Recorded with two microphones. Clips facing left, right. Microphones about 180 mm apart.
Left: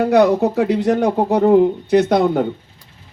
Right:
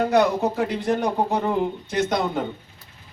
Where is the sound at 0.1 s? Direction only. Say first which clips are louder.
Left 6 dB; 70° left (ahead or behind).